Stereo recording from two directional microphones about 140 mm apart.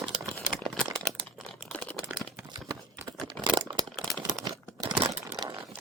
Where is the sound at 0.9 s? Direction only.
5° left (ahead or behind).